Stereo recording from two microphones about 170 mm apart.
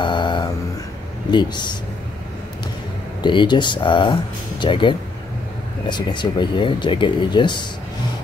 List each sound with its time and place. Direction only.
0.0 s a sound: 25° left (ahead or behind)
1.3 s speech: 25° left (ahead or behind)
3.2 s speech: 25° left (ahead or behind)